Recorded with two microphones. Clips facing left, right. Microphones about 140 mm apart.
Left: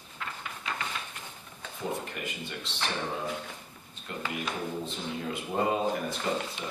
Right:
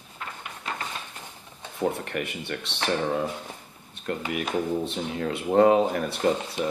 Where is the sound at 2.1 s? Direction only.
65° right (ahead or behind).